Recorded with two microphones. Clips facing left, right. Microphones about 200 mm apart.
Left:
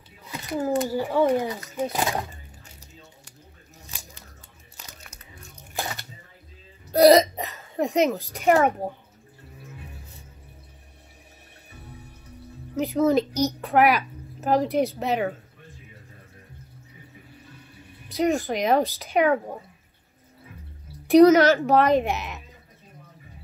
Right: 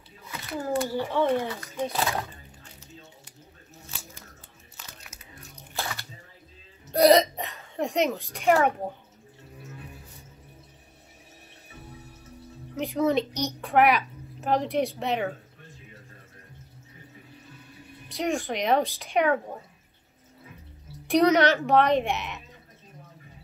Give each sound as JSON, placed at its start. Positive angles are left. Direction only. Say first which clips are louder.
{"t": 0.7, "sound": "speech", "louder": "left 2 dB", "side_deg": 10}
{"t": 5.0, "sound": "biting", "louder": "left 1 dB", "side_deg": 0}
{"t": 5.8, "sound": "bathtub", "louder": "left 2 dB", "side_deg": 20}
{"t": 6.9, "sound": "speech", "louder": "left 3 dB", "side_deg": 0}
{"t": 12.7, "sound": "a child's voice", "louder": "left 4 dB", "side_deg": 0}
{"t": 18.1, "sound": "a child's voice", "louder": "left 5 dB", "side_deg": 0}
{"t": 21.1, "sound": "a child's voice", "louder": "left 6 dB", "side_deg": 0}